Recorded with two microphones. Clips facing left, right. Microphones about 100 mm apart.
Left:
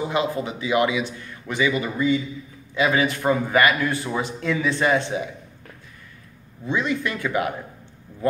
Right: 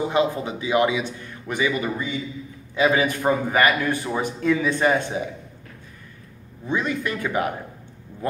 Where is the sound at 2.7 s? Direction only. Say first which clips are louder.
Right 1 dB; 25° right (ahead or behind).